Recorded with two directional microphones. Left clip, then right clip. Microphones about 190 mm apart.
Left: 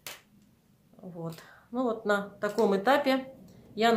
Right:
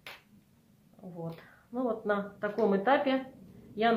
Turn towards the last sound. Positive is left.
turn(degrees=30)  # may be behind; listen again after turning